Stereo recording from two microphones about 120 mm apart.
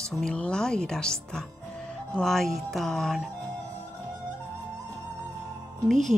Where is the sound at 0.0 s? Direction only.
5° left (ahead or behind).